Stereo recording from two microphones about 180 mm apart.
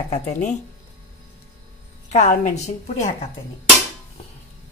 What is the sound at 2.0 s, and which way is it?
A woman's voice, 40° left (ahead or behind).